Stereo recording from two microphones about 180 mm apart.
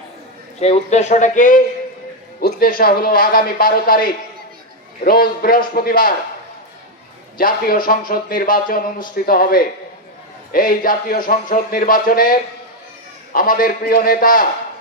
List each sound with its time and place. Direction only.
0.6 s speech: 35° left (ahead or behind); by 6.1 s 55° left (ahead or behind)
7.3 s speech: 50° left (ahead or behind)